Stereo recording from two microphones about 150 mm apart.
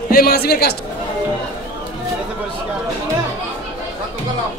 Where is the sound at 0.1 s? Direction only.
90° left.